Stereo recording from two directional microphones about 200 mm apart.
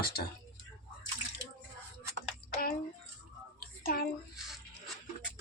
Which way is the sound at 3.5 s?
45° left (ahead or behind).